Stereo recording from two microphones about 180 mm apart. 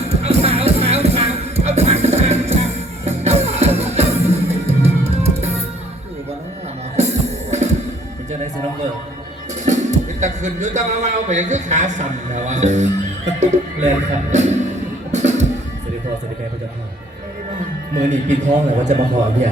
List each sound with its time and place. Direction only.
0.2 s music: 35° right (ahead or behind)
6.9 s music: 40° right (ahead or behind)
10.2 s speech: 40° right (ahead or behind)
15.1 s music: 40° right (ahead or behind)
18.0 s speech: 40° right (ahead or behind)